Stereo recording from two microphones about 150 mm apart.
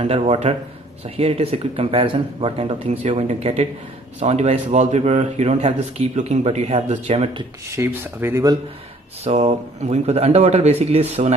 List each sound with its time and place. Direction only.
0.0 s a man's voice: 45° right (ahead or behind)
7.7 s speech: 15° right (ahead or behind)
9.2 s a man's voice: 45° right (ahead or behind)